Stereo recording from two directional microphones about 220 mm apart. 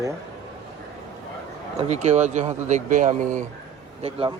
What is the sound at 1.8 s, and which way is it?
Speech, 30° right (ahead or behind).